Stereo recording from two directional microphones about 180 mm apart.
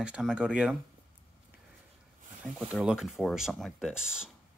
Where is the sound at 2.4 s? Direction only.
5° right (ahead or behind).